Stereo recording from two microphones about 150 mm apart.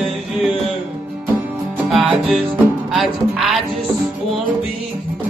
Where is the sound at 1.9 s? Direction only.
5° right (ahead or behind).